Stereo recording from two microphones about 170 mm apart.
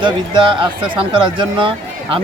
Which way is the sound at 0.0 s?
30° right (ahead or behind).